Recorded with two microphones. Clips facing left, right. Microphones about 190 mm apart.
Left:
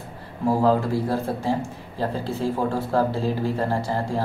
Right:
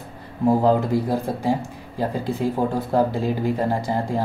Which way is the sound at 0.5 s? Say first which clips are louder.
Right 2 dB; 20° right (ahead or behind).